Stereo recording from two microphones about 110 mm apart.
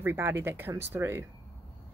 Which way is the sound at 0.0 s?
20° right (ahead or behind).